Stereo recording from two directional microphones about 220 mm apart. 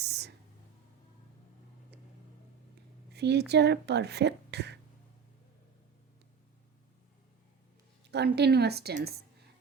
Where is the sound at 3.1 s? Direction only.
50° right (ahead or behind).